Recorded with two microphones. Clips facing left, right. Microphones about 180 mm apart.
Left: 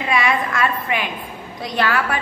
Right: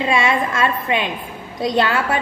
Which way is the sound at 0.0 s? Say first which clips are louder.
Right 2 dB; 25° right (ahead or behind).